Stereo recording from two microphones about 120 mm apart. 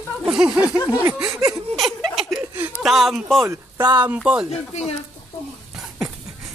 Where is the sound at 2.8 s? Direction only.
Centre (ahead or behind).